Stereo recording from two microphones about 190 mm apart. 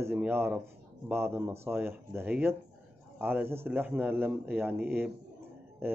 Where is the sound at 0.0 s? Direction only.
10° right (ahead or behind).